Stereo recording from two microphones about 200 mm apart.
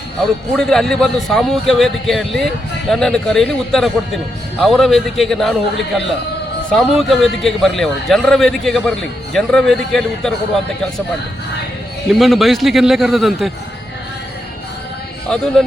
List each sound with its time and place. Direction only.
0.5 s a man's voice: centre (ahead or behind)
6.7 s a man's voice: centre (ahead or behind)
12.2 s a man's voice: centre (ahead or behind)
15.3 s a man's voice: 5° left (ahead or behind)